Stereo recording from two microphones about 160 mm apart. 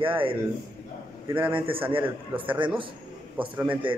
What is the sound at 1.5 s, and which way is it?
Speech, 35° right (ahead or behind).